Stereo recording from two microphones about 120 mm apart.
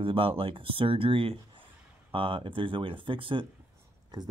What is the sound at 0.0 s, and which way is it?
Speech, 50° right (ahead or behind).